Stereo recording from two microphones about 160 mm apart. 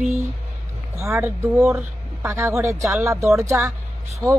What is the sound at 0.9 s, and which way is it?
Speech, 15° right (ahead or behind).